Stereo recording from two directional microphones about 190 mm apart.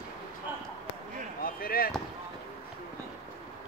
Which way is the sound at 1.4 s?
50° left (ahead or behind).